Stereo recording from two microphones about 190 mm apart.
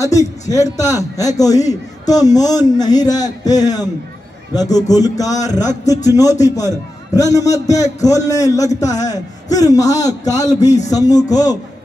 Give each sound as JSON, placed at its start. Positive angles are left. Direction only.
{"t": 0.0, "sound": "a man's voice", "side_deg": 15}